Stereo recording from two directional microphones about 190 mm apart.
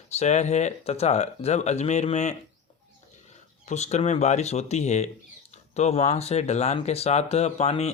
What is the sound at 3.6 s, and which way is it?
Speech, 35° left (ahead or behind).